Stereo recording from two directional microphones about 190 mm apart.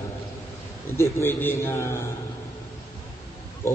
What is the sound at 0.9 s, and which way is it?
A man's voice, 15° left (ahead or behind).